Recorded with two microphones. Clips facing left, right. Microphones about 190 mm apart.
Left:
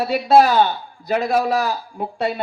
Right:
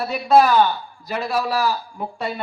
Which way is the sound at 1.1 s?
50° left (ahead or behind).